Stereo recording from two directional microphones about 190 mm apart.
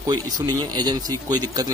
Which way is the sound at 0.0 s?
20° right (ahead or behind).